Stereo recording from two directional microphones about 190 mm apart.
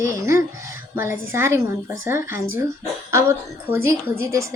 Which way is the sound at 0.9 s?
10° right (ahead or behind).